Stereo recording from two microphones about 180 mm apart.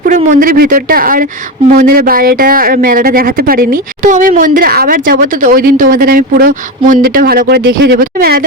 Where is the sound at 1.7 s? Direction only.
50° right (ahead or behind).